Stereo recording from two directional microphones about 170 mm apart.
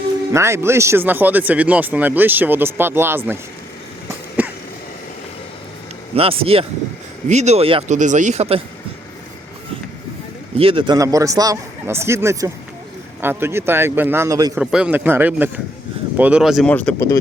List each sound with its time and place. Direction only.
0.3 s speech: 15° right (ahead or behind)
4.4 s a sound: 10° right (ahead or behind)
6.1 s speech: 35° right (ahead or behind)
10.6 s a man's voice: 30° right (ahead or behind)
14.5 s speech: 5° right (ahead or behind)